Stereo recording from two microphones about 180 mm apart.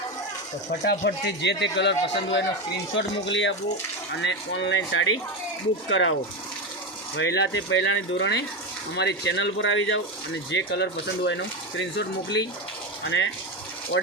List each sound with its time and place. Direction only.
0.9 s a man's voice: 75° left (ahead or behind)
2.9 s speech: 90° left
7.2 s speech: 85° left
13.1 s speech: 90° left
13.9 s speech: 80° left